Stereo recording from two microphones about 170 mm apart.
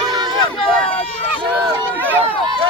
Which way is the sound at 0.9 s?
35° left (ahead or behind).